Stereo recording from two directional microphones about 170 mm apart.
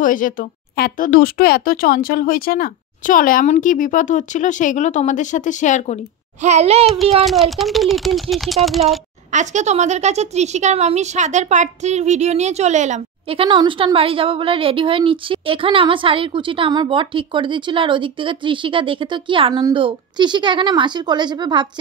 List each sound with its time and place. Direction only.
0.0 s speech: 50° left (ahead or behind)
6.4 s a woman's voice: 40° right (ahead or behind)
7.2 s speech: centre (ahead or behind)
9.3 s a woman's voice: 45° right (ahead or behind); by 21.6 s 25° right (ahead or behind)